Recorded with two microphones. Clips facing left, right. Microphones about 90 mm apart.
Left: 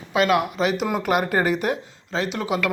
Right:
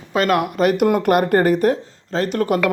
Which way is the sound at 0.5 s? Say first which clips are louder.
Right 7 dB; 50° right (ahead or behind).